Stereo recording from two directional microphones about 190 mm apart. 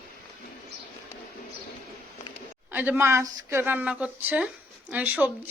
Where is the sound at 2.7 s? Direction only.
10° right (ahead or behind).